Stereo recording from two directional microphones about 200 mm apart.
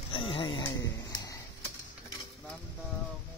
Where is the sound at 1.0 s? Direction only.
20° left (ahead or behind).